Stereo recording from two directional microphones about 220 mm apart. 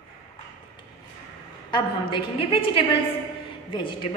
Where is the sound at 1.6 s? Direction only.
20° left (ahead or behind).